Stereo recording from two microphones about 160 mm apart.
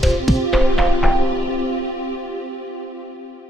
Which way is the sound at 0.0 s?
Centre (ahead or behind).